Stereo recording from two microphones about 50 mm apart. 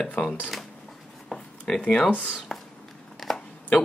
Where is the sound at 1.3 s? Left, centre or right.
Centre.